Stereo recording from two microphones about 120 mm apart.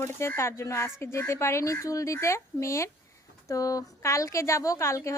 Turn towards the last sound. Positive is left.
turn(degrees=25)  # may be behind; listen again after turning